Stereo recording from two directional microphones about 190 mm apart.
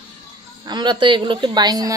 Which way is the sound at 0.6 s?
25° right (ahead or behind).